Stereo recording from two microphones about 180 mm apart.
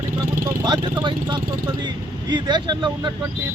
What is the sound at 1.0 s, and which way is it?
Speech, 25° right (ahead or behind).